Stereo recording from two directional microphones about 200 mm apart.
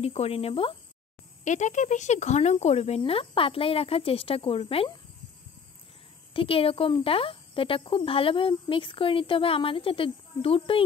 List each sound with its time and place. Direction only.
0.0 s speech: 30° left (ahead or behind)
6.3 s speech: 30° left (ahead or behind)